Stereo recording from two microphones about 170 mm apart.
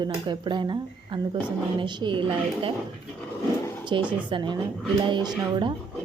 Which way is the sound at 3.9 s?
30° right (ahead or behind).